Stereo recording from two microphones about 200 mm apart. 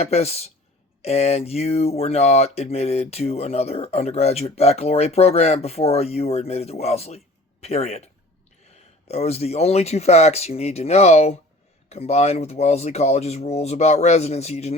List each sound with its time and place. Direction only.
0.0 s speech: 30° left (ahead or behind)